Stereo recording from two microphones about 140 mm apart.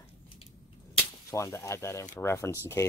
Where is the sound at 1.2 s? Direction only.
20° left (ahead or behind).